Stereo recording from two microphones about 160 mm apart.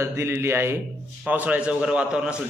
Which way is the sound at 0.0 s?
15° right (ahead or behind).